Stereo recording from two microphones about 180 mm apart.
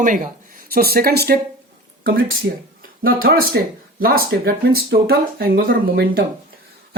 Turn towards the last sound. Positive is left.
turn(degrees=-55)  # may be behind; listen again after turning